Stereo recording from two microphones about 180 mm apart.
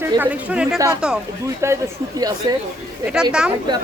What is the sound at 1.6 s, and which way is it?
Speech, 15° right (ahead or behind).